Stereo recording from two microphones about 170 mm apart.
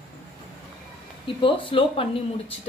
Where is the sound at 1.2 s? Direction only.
30° left (ahead or behind).